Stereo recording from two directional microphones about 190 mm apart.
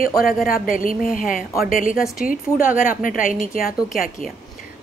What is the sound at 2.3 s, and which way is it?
A woman's voice, 45° left (ahead or behind).